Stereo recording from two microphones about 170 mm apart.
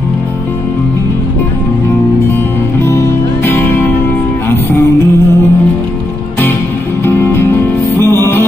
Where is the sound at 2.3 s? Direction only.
15° left (ahead or behind).